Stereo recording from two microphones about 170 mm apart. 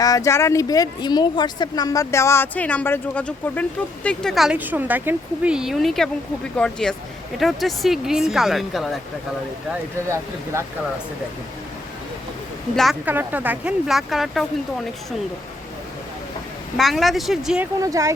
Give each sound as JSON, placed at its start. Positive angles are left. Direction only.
{"t": 0.0, "sound": "speech", "side_deg": 20}
{"t": 10.1, "sound": "speech", "side_deg": -15}
{"t": 12.7, "sound": "speech", "side_deg": 0}
{"t": 13.1, "sound": "speech", "side_deg": -10}
{"t": 16.7, "sound": "speech", "side_deg": 0}
{"t": 17.7, "sound": "speech", "side_deg": -20}